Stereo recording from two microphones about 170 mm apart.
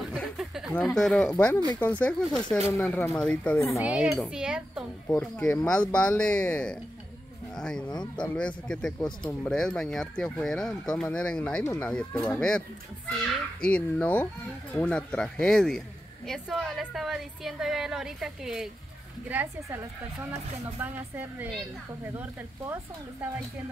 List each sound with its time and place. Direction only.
0.1 s a sound: centre (ahead or behind)
0.7 s speech: centre (ahead or behind)
3.5 s speech: 15° left (ahead or behind)
3.8 s a woman's voice: 5° right (ahead or behind)
5.0 s speech: 10° left (ahead or behind)
12.4 s a woman's voice: 5° left (ahead or behind); by 22.8 s 10° right (ahead or behind)